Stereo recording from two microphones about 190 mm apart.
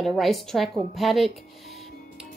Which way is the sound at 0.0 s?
Centre (ahead or behind).